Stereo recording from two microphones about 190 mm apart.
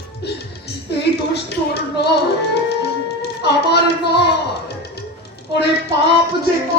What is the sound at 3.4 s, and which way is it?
Speech, 60° left (ahead or behind).